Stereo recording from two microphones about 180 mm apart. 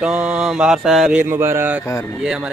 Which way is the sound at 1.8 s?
15° left (ahead or behind).